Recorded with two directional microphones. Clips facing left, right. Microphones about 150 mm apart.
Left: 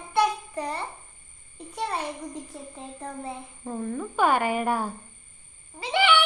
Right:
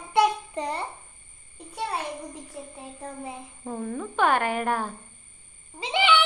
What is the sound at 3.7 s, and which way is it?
A woman's voice, centre (ahead or behind).